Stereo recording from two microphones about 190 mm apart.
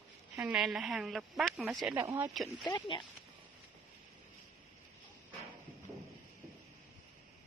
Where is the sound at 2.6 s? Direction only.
25° left (ahead or behind).